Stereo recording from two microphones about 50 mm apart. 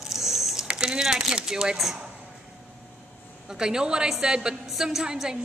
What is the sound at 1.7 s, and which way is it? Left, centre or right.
Speech, centre.